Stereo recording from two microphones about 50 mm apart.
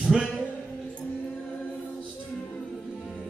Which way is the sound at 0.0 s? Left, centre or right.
Centre.